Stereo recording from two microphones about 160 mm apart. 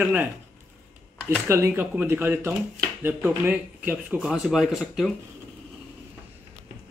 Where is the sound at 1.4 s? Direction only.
15° right (ahead or behind); by 5.1 s centre (ahead or behind).